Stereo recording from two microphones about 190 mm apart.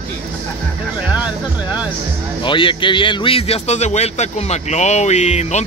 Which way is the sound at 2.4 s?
25° left (ahead or behind).